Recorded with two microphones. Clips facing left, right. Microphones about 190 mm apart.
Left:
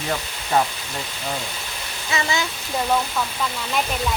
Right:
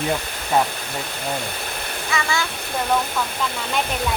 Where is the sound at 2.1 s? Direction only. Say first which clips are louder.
Left 1 dB; 20° left (ahead or behind).